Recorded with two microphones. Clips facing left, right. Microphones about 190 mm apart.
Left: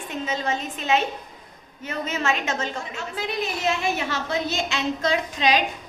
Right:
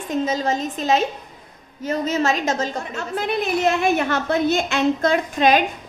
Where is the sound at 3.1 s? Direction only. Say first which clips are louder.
Right 7 dB; 55° right (ahead or behind).